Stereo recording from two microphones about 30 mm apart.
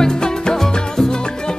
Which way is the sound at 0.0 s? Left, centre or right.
Left.